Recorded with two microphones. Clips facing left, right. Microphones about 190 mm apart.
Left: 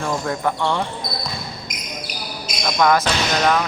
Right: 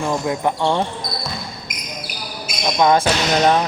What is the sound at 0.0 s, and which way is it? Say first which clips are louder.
Speech: right 2 dB; 15° right (ahead or behind).